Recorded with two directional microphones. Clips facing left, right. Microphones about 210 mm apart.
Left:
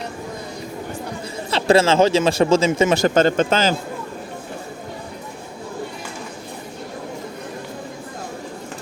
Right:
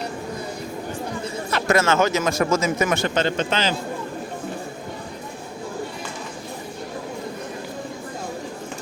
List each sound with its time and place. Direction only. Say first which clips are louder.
1.5 s a man's voice: left 5 dB; 30° left (ahead or behind)
3.0 s a man's voice: left 6 dB; 45° left (ahead or behind)